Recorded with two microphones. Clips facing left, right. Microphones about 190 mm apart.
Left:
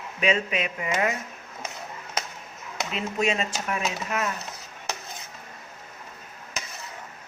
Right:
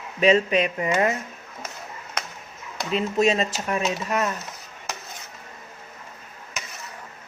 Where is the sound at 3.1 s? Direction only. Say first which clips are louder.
Right 4 dB; 35° right (ahead or behind).